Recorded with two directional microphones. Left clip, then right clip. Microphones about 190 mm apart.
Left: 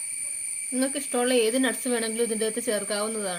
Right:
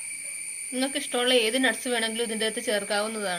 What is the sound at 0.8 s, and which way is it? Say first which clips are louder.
Speech: even; 55° left (ahead or behind).